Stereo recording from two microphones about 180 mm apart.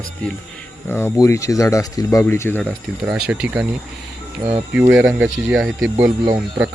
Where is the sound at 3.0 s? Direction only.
5° right (ahead or behind).